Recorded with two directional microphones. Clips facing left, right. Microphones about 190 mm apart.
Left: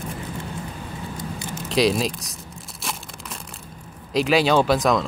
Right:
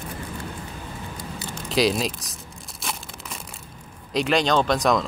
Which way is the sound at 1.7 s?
Centre (ahead or behind).